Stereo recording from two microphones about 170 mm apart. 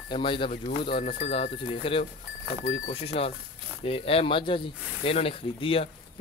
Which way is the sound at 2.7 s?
50° left (ahead or behind).